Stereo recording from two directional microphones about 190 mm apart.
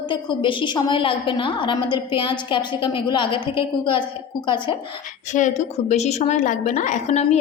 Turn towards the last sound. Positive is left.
turn(degrees=35)  # may be behind; listen again after turning